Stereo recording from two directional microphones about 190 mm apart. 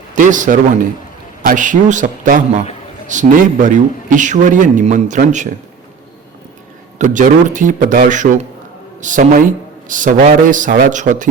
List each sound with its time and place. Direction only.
0.2 s a man's voice: 40° right (ahead or behind)
7.0 s a man's voice: 40° right (ahead or behind)